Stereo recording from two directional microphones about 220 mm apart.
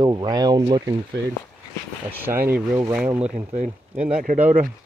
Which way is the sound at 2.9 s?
5° right (ahead or behind).